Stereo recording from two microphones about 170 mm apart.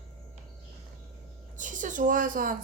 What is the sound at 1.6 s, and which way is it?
Speech, 50° right (ahead or behind).